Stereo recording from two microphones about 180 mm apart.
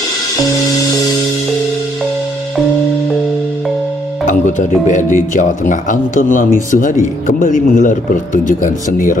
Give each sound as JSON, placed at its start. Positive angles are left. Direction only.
{"t": 4.3, "sound": "speech", "side_deg": 45}